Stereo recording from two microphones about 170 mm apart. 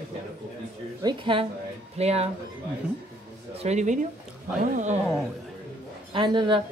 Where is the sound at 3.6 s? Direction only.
45° right (ahead or behind).